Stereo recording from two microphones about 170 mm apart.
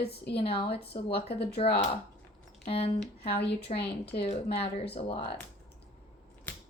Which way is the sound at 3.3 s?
70° left (ahead or behind).